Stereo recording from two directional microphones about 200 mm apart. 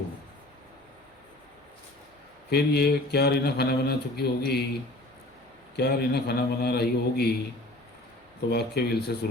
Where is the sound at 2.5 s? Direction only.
55° left (ahead or behind).